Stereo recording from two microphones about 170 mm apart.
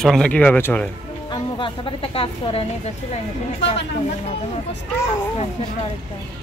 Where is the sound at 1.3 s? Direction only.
30° left (ahead or behind).